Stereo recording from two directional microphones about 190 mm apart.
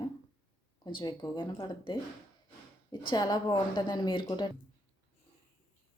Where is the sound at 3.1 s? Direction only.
20° left (ahead or behind).